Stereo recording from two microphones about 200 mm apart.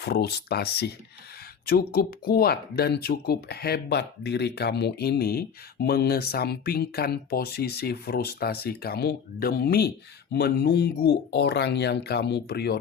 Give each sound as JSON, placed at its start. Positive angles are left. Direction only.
{"t": 0.0, "sound": "speech", "side_deg": 55}